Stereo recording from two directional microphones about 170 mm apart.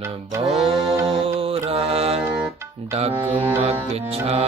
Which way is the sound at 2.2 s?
15° right (ahead or behind).